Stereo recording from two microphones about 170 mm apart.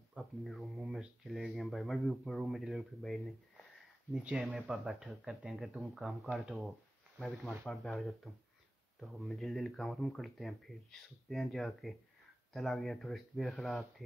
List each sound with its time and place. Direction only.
0.1 s speech: centre (ahead or behind)